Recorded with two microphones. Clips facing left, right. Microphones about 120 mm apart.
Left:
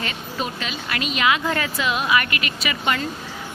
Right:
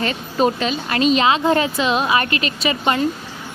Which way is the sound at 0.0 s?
35° right (ahead or behind).